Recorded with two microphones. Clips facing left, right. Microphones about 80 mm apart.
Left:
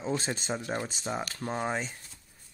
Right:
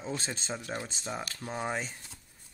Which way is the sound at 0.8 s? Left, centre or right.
Centre.